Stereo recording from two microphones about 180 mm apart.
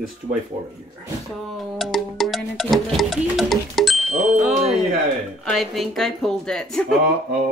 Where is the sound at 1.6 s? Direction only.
Centre (ahead or behind).